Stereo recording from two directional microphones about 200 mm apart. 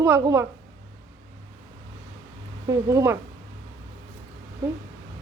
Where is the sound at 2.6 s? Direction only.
15° right (ahead or behind).